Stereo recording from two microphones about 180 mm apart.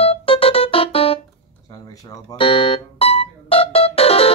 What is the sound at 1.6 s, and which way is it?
Music, 20° left (ahead or behind).